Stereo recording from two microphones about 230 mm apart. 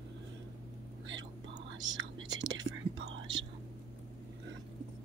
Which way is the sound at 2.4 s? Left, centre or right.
Right.